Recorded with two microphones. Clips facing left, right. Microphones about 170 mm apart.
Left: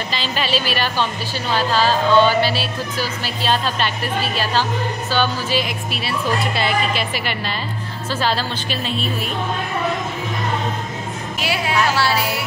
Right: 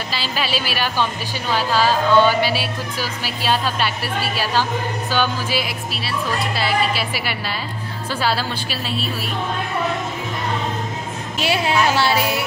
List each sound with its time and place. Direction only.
0.1 s speech: 10° right (ahead or behind)
11.3 s speech: 25° right (ahead or behind)